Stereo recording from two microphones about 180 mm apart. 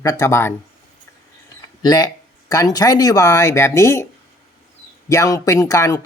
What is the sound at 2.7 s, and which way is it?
Speech, 20° left (ahead or behind).